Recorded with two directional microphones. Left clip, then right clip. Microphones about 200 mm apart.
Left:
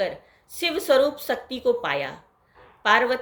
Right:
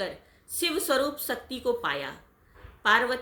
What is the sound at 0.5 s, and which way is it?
A woman's voice, 20° right (ahead or behind).